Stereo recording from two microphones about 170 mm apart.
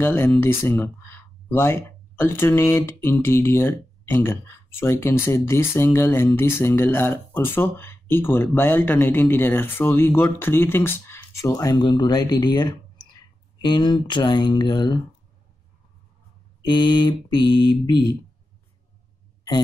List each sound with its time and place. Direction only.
0.0 s speech: 15° left (ahead or behind)
13.6 s mantra: 25° left (ahead or behind)
16.6 s mantra: 25° left (ahead or behind)